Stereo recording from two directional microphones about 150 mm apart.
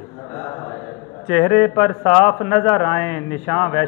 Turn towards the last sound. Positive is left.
turn(degrees=15)  # may be behind; listen again after turning